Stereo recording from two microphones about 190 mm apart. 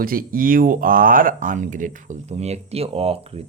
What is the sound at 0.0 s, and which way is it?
Speech, 50° right (ahead or behind).